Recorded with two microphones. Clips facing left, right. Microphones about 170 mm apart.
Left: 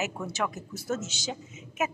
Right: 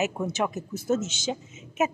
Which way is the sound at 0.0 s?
20° right (ahead or behind).